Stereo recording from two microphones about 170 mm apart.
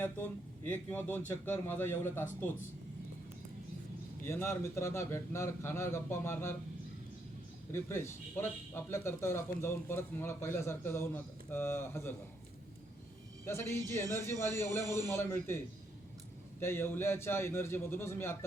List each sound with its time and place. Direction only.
0.6 s a man's voice: 10° left (ahead or behind)
4.3 s a man's voice: 15° left (ahead or behind)
7.7 s a man's voice: 15° left (ahead or behind)
13.4 s a man's voice: 15° left (ahead or behind)
16.6 s a man's voice: 15° left (ahead or behind)